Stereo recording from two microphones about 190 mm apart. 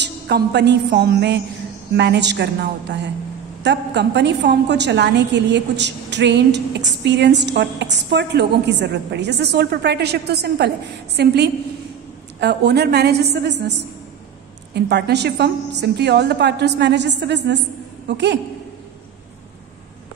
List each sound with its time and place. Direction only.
0.0 s a woman's voice: 65° right (ahead or behind)